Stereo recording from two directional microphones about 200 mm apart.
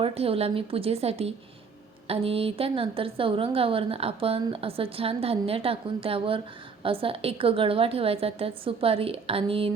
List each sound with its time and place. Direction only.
0.0 s a woman's voice: 30° right (ahead or behind)